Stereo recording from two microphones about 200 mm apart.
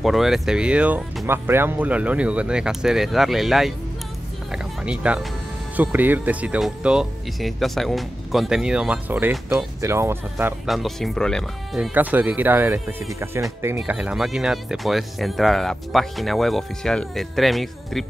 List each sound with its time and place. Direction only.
0.0 s speech: centre (ahead or behind)
4.5 s music: 5° right (ahead or behind)
5.8 s speech: 10° right (ahead or behind)
10.7 s speech: centre (ahead or behind)